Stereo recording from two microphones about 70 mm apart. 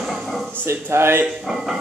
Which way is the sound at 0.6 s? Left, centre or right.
Right.